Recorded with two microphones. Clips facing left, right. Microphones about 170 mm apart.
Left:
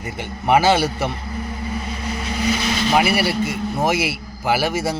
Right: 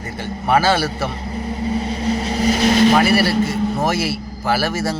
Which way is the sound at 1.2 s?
30° right (ahead or behind).